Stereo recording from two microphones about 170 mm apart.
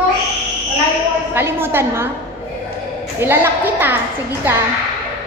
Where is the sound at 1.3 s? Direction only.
15° right (ahead or behind).